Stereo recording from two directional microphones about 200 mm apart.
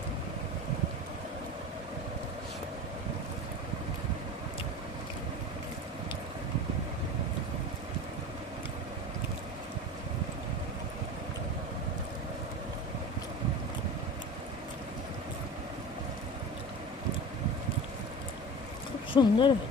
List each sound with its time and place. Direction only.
19.1 s speech: 25° left (ahead or behind)